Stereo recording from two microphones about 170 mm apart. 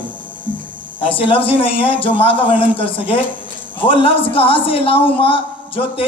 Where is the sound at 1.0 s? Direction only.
30° left (ahead or behind).